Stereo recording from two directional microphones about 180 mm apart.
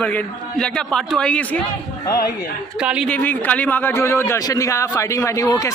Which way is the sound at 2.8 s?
5° right (ahead or behind).